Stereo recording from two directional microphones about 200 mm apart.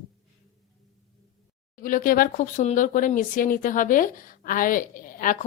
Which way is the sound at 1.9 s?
45° left (ahead or behind).